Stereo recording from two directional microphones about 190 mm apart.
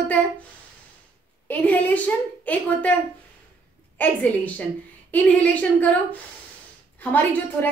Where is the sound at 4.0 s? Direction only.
10° left (ahead or behind).